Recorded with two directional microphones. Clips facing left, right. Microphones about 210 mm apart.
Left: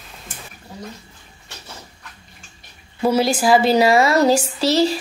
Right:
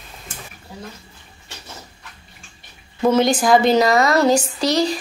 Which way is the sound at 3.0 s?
10° left (ahead or behind).